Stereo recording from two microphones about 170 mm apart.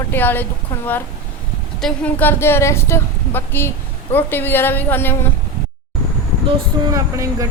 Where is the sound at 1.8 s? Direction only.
5° left (ahead or behind).